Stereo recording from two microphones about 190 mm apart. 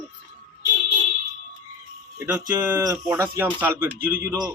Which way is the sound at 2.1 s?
10° right (ahead or behind).